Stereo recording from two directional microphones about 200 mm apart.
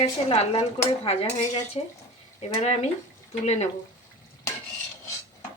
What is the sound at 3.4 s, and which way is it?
Speech, 35° left (ahead or behind).